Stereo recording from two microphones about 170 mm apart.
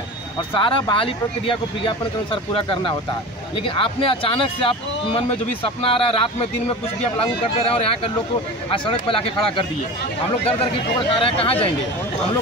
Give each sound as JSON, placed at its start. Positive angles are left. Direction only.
{"t": 0.6, "sound": "speech", "side_deg": 30}
{"t": 11.1, "sound": "speech", "side_deg": 35}